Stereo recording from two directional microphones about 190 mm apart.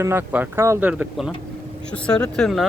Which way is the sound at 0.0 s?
10° right (ahead or behind).